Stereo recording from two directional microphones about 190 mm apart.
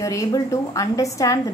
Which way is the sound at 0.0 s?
15° left (ahead or behind).